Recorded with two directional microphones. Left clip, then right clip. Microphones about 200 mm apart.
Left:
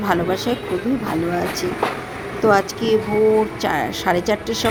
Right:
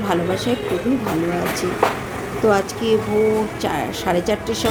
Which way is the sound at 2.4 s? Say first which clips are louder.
Left 1 dB; 20° left (ahead or behind).